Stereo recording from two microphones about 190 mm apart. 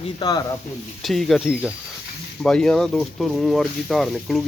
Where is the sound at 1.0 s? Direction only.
Centre (ahead or behind).